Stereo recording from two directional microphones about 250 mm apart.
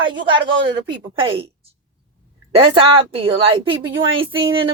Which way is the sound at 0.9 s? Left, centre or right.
Right.